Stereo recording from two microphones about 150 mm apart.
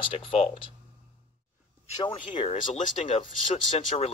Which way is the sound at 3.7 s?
40° left (ahead or behind).